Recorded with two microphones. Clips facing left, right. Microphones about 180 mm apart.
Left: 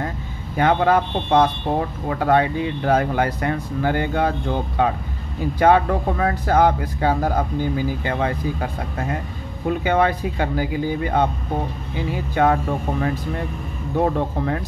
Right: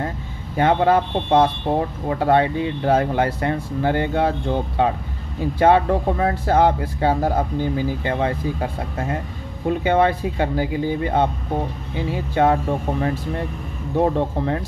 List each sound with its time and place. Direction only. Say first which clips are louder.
0.6 s speech: right 1 dB; 25° right (ahead or behind)